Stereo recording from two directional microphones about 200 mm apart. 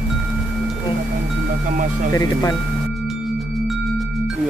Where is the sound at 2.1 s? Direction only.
20° left (ahead or behind).